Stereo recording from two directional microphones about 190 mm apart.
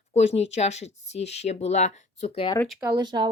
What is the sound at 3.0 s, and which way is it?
Speech, 25° right (ahead or behind).